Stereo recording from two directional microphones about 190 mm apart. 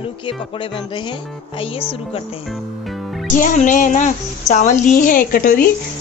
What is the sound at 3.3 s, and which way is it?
A woman's voice, 40° left (ahead or behind).